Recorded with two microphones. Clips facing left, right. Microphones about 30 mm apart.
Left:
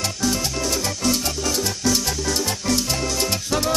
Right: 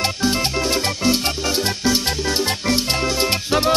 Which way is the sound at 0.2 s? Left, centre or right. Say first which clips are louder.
Right 1 dB; right.